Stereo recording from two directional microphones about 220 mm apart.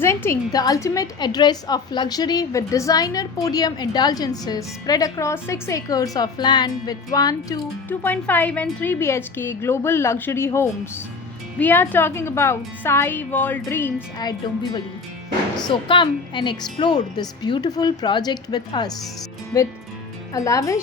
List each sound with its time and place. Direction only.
0.0 s a woman's voice: 10° left (ahead or behind)
15.6 s a woman's voice: 20° left (ahead or behind)